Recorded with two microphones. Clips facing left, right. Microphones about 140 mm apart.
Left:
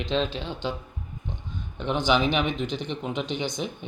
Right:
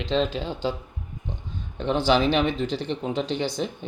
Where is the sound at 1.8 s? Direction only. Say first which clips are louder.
Right 2 dB; 35° right (ahead or behind).